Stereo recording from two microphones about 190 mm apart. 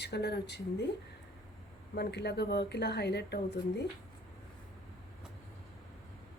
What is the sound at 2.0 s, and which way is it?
Speech, 60° left (ahead or behind).